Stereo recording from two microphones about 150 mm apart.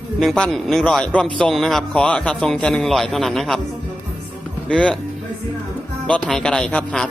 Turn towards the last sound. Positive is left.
turn(degrees=5)  # may be behind; listen again after turning